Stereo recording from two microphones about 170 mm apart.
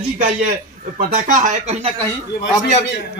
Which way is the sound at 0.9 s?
50° right (ahead or behind).